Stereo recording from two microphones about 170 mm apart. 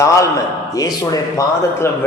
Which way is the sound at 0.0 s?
20° left (ahead or behind).